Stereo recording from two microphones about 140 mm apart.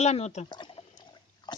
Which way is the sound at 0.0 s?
50° left (ahead or behind).